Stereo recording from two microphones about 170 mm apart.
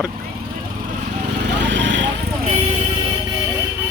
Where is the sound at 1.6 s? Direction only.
90° right.